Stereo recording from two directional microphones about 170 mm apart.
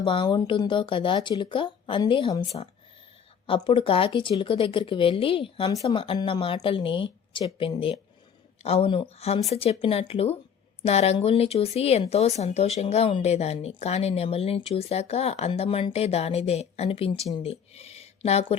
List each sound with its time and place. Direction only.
0.0 s speech: 30° left (ahead or behind)